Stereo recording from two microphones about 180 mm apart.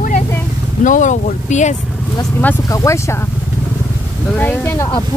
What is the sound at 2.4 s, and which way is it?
Speech, 15° left (ahead or behind).